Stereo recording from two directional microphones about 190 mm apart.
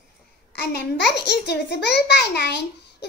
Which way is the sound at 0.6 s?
60° left (ahead or behind).